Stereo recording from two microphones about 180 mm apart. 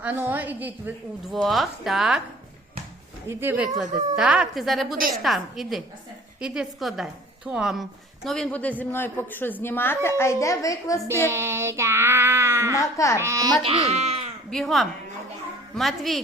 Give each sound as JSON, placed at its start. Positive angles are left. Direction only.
{"t": 0.0, "sound": "a woman's voice", "side_deg": -10}
{"t": 3.2, "sound": "child singing", "side_deg": -10}
{"t": 3.8, "sound": "speech", "side_deg": -40}
{"t": 4.1, "sound": "a woman's voice", "side_deg": -5}
{"t": 11.3, "sound": "child singing", "side_deg": -15}
{"t": 12.8, "sound": "a woman's voice", "side_deg": 15}
{"t": 13.1, "sound": "child singing", "side_deg": -15}
{"t": 13.7, "sound": "speech", "side_deg": -35}
{"t": 14.5, "sound": "a woman's voice", "side_deg": 0}